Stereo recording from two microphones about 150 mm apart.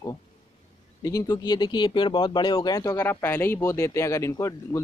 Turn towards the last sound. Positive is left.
turn(degrees=20)  # may be behind; listen again after turning